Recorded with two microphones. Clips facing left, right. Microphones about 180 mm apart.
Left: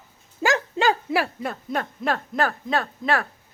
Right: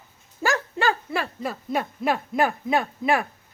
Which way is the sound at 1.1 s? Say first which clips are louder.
Left 3 dB; 10° left (ahead or behind).